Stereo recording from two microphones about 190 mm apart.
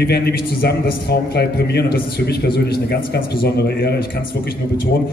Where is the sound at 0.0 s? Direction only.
60° left (ahead or behind).